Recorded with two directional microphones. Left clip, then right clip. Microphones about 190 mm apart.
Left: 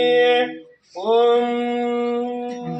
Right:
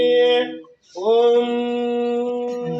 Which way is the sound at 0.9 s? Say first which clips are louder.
Right 1 dB; centre (ahead or behind).